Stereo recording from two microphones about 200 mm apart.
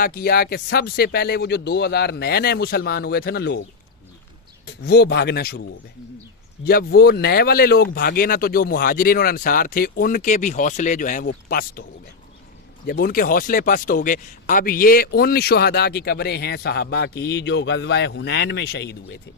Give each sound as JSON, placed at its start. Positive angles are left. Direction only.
{"t": 0.0, "sound": "speech", "side_deg": 50}
{"t": 4.6, "sound": "speech", "side_deg": 55}
{"t": 6.7, "sound": "speech", "side_deg": 50}